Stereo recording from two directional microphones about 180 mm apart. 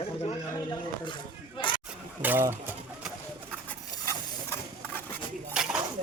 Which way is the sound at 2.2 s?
10° right (ahead or behind).